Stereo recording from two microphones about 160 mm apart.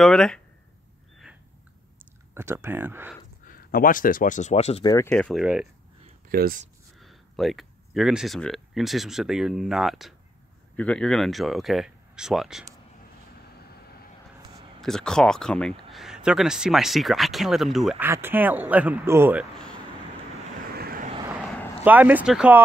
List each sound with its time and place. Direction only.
0.0 s speech: 5° left (ahead or behind)
2.3 s speech: 15° right (ahead or behind)
3.4 s speech: 60° left (ahead or behind); by 4.8 s 40° left (ahead or behind)
4.8 s speech: 20° left (ahead or behind)
5.1 s speech: 5° left (ahead or behind)
5.4 s speech: 5° right (ahead or behind)
6.2 s a sound: 70° right (ahead or behind)
7.0 s speech: centre (ahead or behind)
14.8 s speech: 5° left (ahead or behind)
18.0 s speech: 15° right (ahead or behind)
20.7 s vehicle: 75° right (ahead or behind)
21.8 s speech: 10° right (ahead or behind)